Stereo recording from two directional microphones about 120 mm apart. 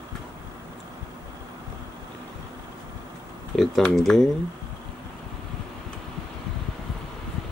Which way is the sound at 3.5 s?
Centre (ahead or behind).